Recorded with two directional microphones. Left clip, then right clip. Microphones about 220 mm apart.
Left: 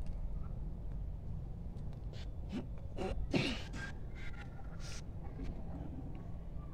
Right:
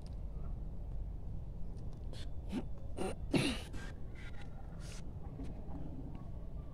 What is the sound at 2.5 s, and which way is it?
Throat clearing, 25° right (ahead or behind).